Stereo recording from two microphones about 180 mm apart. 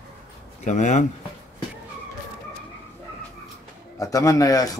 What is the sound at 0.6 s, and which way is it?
Speech, 40° left (ahead or behind).